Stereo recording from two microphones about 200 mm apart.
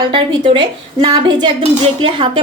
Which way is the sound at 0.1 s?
25° right (ahead or behind).